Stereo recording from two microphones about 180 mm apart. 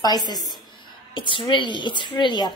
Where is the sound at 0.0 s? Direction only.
20° left (ahead or behind).